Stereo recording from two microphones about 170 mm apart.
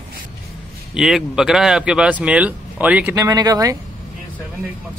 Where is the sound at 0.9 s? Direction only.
5° right (ahead or behind).